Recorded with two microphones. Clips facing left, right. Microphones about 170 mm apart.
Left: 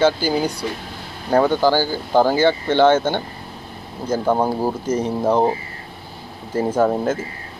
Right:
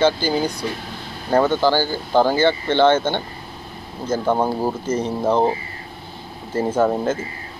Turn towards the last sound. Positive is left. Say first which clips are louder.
# left 1 dB
turn(degrees=10)  # may be behind; listen again after turning